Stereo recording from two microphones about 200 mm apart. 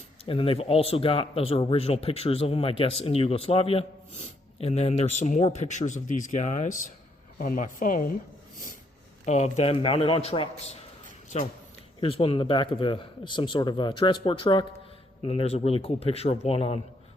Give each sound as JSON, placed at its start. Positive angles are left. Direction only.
{"t": 0.3, "sound": "speech", "side_deg": 25}
{"t": 9.2, "sound": "speech", "side_deg": 35}